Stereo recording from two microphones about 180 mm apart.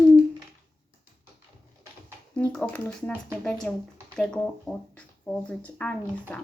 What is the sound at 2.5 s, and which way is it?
Speech, 5° left (ahead or behind).